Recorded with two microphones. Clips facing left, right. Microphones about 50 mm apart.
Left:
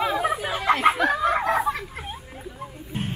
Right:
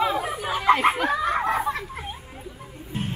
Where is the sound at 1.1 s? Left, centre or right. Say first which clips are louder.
Left 1 dB; centre.